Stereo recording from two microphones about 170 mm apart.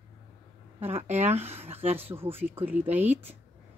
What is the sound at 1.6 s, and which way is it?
Speech, 35° right (ahead or behind).